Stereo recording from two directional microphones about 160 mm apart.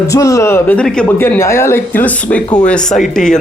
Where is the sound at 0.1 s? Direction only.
20° left (ahead or behind).